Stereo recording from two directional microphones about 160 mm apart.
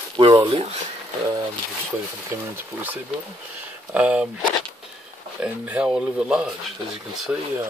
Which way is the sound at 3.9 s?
10° right (ahead or behind).